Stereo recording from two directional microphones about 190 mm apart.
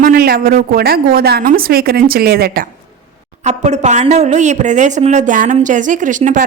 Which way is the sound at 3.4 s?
35° right (ahead or behind).